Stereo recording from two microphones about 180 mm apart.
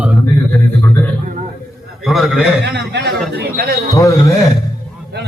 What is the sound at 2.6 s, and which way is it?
Speech, 70° right (ahead or behind).